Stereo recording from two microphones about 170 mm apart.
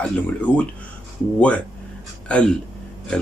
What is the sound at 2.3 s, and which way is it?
Speech, 5° left (ahead or behind).